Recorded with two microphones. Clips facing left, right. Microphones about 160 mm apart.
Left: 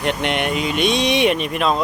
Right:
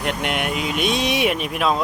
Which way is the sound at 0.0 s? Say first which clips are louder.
Left 3 dB; 5° right (ahead or behind).